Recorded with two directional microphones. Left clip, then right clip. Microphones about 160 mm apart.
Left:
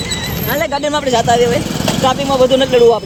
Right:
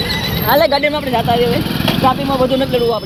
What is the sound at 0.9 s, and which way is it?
Speech, 35° left (ahead or behind).